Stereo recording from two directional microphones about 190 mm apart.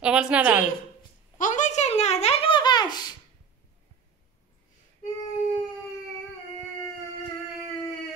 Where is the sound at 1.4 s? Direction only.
40° left (ahead or behind); by 3.1 s 20° left (ahead or behind).